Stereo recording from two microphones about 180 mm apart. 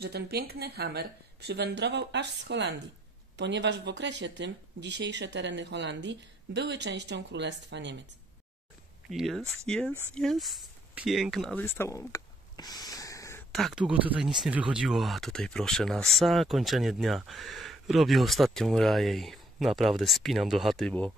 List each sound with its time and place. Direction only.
0.0 s speech: 60° right (ahead or behind)
9.1 s speech: centre (ahead or behind)
11.6 s a sound: 15° left (ahead or behind)
13.5 s speech: centre (ahead or behind)